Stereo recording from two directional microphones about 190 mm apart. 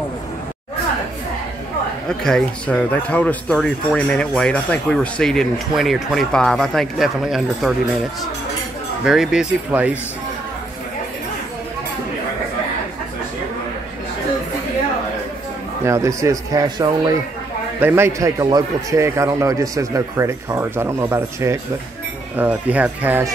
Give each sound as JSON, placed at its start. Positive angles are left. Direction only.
{"t": 2.0, "sound": "speech", "side_deg": 5}
{"t": 9.0, "sound": "speech", "side_deg": 0}
{"t": 15.8, "sound": "a man's voice", "side_deg": -15}
{"t": 17.7, "sound": "a man's voice", "side_deg": -10}